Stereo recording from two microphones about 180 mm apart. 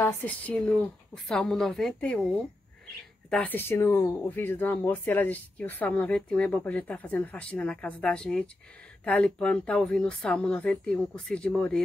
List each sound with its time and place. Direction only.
0.0 s speech: 10° left (ahead or behind)